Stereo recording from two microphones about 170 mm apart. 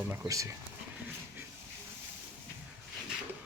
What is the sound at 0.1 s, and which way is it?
Speech, 15° right (ahead or behind).